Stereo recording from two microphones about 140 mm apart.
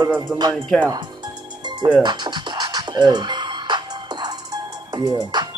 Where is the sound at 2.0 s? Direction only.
30° right (ahead or behind).